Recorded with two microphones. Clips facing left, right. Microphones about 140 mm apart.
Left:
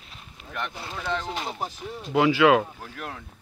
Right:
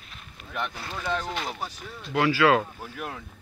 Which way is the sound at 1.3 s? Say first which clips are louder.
Left 1 dB; 20° left (ahead or behind).